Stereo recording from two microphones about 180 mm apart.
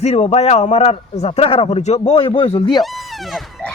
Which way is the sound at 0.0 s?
40° left (ahead or behind).